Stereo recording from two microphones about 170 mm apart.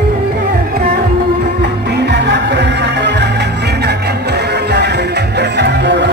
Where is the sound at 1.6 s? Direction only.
80° right.